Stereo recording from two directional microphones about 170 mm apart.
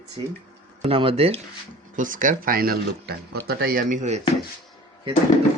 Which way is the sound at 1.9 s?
50° right (ahead or behind).